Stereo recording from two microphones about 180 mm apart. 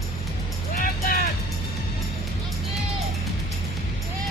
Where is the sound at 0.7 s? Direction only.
50° left (ahead or behind).